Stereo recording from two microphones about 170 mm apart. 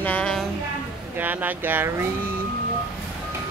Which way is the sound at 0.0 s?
10° left (ahead or behind).